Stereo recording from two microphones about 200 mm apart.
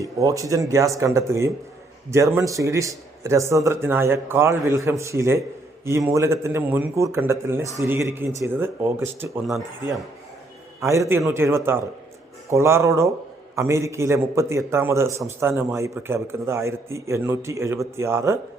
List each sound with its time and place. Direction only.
0.0 s a man's voice: 15° right (ahead or behind)
10.8 s a man's voice: 15° right (ahead or behind)